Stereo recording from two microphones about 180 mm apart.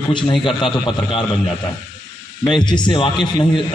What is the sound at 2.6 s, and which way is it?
A man's voice, 25° left (ahead or behind).